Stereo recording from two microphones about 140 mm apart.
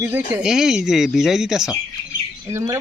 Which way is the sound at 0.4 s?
5° right (ahead or behind).